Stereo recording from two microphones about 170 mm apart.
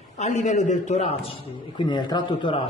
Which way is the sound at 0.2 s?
45° left (ahead or behind).